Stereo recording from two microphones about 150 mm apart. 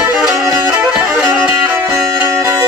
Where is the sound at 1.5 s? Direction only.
15° right (ahead or behind).